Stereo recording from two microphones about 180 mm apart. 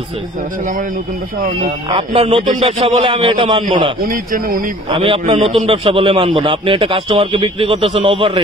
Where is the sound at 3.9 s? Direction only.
50° right (ahead or behind).